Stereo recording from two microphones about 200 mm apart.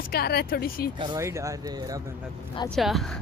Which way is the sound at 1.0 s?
15° right (ahead or behind).